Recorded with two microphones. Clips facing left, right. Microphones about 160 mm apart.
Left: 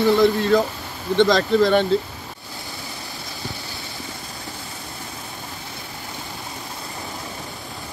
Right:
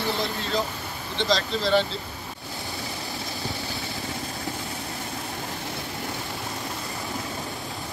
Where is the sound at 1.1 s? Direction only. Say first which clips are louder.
Left 9 dB; 55° left (ahead or behind).